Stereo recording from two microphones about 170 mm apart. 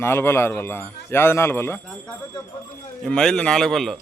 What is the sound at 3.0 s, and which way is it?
Speech, 5° left (ahead or behind).